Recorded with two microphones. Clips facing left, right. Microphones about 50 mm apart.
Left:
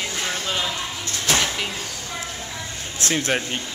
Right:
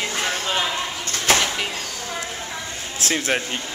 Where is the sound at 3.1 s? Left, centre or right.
Centre.